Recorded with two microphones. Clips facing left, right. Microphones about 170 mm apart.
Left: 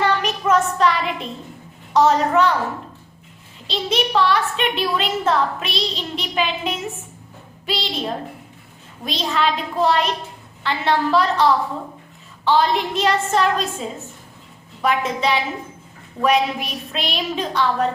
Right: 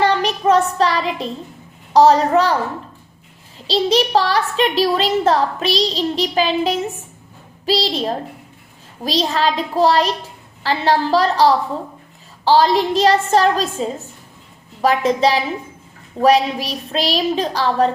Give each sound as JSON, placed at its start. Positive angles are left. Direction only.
{"t": 0.0, "sound": "child singing", "side_deg": -35}
{"t": 1.9, "sound": "a child's voice", "side_deg": -35}
{"t": 3.7, "sound": "a child's voice", "side_deg": -35}